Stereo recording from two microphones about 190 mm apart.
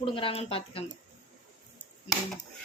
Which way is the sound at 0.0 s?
25° left (ahead or behind).